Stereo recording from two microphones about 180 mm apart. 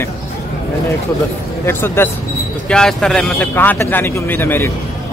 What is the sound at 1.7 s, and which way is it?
A man's voice, 15° left (ahead or behind).